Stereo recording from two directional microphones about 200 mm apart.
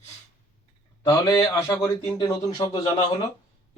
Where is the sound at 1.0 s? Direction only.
15° left (ahead or behind).